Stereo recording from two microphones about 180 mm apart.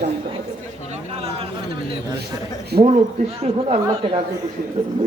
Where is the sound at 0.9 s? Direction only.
35° right (ahead or behind).